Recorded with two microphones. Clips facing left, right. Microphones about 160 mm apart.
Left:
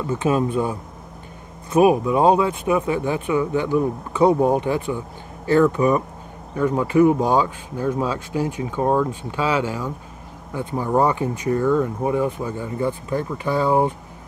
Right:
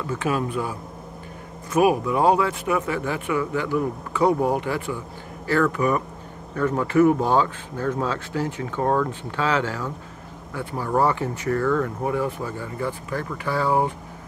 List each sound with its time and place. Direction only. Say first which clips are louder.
0.0 s speech: left 4 dB; 20° left (ahead or behind)